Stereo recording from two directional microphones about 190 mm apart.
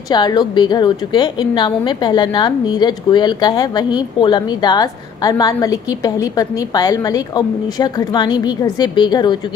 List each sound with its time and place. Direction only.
0.1 s a woman's voice: 20° left (ahead or behind)